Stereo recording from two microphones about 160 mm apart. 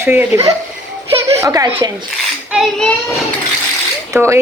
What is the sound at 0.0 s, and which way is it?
Speech, 15° right (ahead or behind).